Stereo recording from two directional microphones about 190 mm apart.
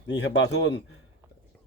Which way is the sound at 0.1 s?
65° left (ahead or behind).